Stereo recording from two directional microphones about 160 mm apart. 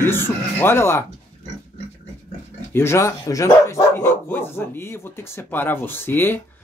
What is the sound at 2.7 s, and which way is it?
Speech, 15° left (ahead or behind).